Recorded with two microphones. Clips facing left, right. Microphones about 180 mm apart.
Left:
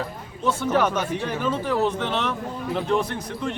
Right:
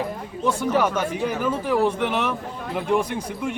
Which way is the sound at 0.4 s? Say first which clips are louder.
Even; 10° right (ahead or behind).